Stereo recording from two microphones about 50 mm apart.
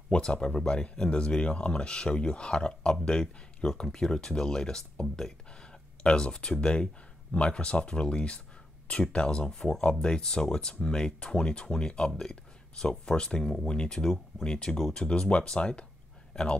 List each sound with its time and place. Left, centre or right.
0.1 s speech: centre